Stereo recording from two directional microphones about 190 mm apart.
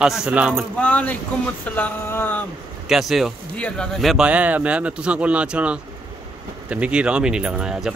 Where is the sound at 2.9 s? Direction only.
Centre (ahead or behind).